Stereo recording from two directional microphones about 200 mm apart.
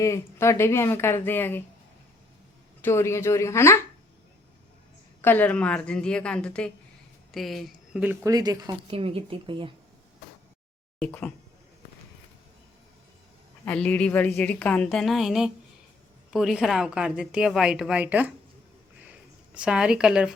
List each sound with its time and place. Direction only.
0.0 s a woman's voice: 15° left (ahead or behind)
2.8 s a woman's voice: 15° left (ahead or behind)
5.2 s speech: 10° left (ahead or behind); by 9.7 s 25° right (ahead or behind)
11.0 s a woman's voice: 5° left (ahead or behind)
13.7 s a woman's voice: 5° left (ahead or behind)
19.5 s speech: 5° right (ahead or behind)